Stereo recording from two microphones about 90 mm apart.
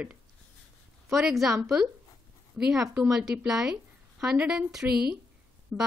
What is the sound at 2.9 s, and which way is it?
Speech, 10° right (ahead or behind).